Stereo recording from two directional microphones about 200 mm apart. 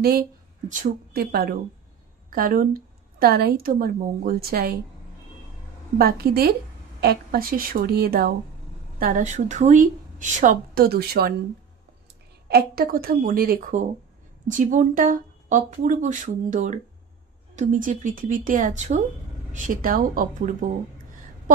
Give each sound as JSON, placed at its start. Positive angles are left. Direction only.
{"t": 0.0, "sound": "a woman's voice", "side_deg": -45}
{"t": 5.9, "sound": "a woman's voice", "side_deg": -50}
{"t": 12.4, "sound": "a woman's voice", "side_deg": -50}